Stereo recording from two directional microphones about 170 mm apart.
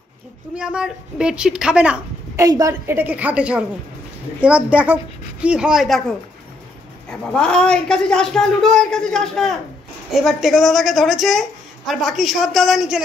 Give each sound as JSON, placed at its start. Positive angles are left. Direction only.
{"t": 0.6, "sound": "a woman's voice", "side_deg": -5}
{"t": 2.3, "sound": "a woman's voice", "side_deg": -20}